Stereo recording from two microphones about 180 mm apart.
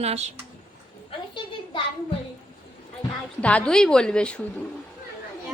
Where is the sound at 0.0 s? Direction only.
35° right (ahead or behind).